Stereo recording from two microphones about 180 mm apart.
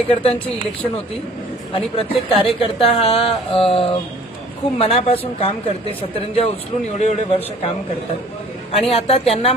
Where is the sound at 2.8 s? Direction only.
35° left (ahead or behind).